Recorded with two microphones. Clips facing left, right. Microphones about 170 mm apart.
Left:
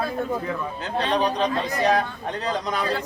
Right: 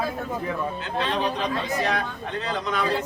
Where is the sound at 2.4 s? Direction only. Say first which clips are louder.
Left 1 dB; 35° left (ahead or behind).